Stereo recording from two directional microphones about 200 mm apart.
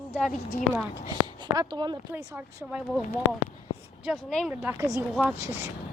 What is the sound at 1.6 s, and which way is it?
Speech, 20° right (ahead or behind).